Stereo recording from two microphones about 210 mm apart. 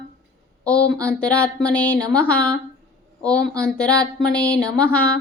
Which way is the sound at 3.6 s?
5° left (ahead or behind).